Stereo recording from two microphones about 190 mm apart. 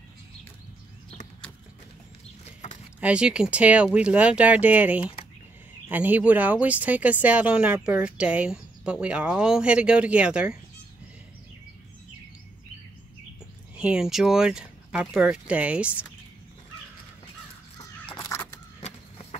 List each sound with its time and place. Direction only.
3.0 s speech: 5° right (ahead or behind)
13.7 s speech: 5° right (ahead or behind)
18.0 s a sound: 20° left (ahead or behind)